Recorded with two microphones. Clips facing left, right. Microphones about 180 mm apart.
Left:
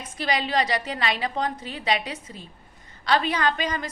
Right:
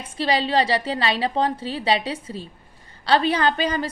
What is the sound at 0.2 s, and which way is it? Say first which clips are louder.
A woman's voice: right 4 dB; 30° right (ahead or behind).